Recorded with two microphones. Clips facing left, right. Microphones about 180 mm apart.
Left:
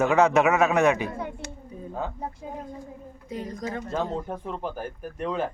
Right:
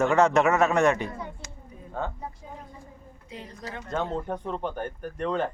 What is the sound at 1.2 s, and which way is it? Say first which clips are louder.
Speech: left 5 dB; 65° left (ahead or behind).